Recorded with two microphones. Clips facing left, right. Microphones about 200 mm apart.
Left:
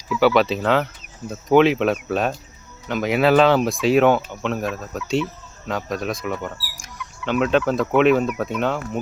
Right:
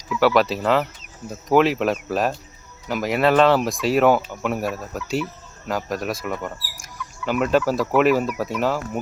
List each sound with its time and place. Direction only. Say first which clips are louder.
0.2 s speech: left 1 dB; centre (ahead or behind)